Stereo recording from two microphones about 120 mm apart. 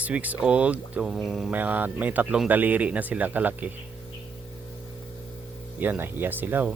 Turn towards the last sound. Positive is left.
turn(degrees=-15)  # may be behind; listen again after turning